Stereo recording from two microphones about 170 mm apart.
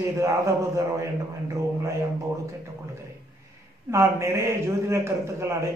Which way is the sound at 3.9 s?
15° right (ahead or behind).